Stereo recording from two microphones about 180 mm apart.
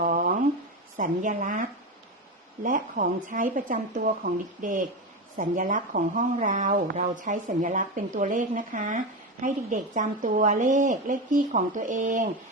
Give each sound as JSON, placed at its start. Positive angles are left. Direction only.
{"t": 0.0, "sound": "a sound", "side_deg": -50}
{"t": 0.9, "sound": "a woman's voice", "side_deg": -45}
{"t": 2.6, "sound": "a woman's voice", "side_deg": -45}